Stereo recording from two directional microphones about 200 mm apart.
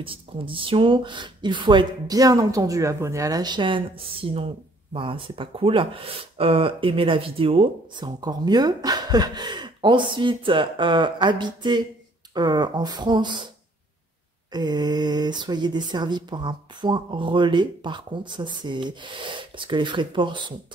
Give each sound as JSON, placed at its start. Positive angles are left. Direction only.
{"t": 0.0, "sound": "speech", "side_deg": -25}
{"t": 14.5, "sound": "speech", "side_deg": -20}